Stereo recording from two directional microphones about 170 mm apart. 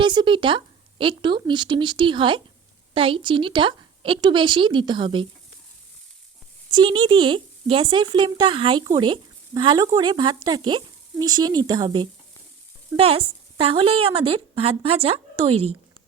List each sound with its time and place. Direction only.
0.0 s speech: 30° right (ahead or behind)
6.7 s a woman's voice: 30° right (ahead or behind)